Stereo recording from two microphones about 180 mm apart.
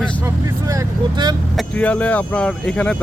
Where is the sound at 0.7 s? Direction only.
20° right (ahead or behind).